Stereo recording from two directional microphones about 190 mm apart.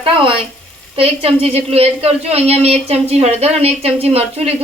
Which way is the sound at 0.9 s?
30° right (ahead or behind).